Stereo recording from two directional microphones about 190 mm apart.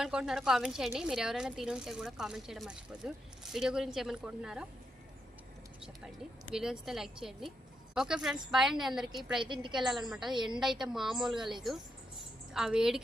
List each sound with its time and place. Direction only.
0.0 s speech: centre (ahead or behind)
6.5 s speech: 5° right (ahead or behind)
9.4 s a woman's voice: 25° right (ahead or behind)
9.7 s speech: centre (ahead or behind)